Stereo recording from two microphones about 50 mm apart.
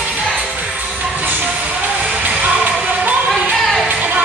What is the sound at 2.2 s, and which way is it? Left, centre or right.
Music, right.